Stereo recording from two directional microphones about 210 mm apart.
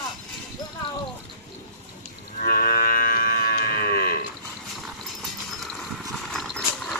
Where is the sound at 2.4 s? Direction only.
45° left (ahead or behind).